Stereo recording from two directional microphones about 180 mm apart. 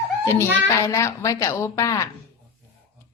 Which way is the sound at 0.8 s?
15° left (ahead or behind).